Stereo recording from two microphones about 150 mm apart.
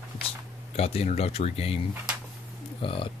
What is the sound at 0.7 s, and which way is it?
Speech, 45° left (ahead or behind).